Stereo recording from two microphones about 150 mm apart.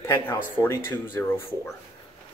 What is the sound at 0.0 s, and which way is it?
Speech, 15° left (ahead or behind).